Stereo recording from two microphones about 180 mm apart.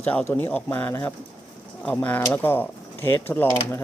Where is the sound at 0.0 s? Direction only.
10° left (ahead or behind).